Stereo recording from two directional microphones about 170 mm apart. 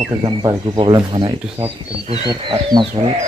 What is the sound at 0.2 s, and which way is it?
Speech, 30° right (ahead or behind).